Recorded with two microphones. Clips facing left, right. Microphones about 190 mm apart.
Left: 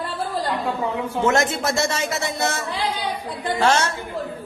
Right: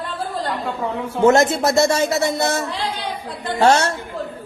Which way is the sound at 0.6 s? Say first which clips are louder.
Even; centre (ahead or behind).